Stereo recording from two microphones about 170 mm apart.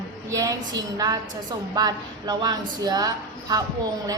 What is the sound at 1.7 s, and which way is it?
A woman's voice, 25° right (ahead or behind).